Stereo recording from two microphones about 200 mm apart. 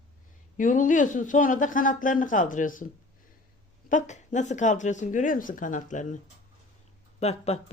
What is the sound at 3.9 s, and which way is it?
Speech, 35° left (ahead or behind).